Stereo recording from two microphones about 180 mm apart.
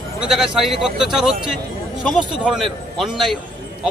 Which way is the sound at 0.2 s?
5° right (ahead or behind).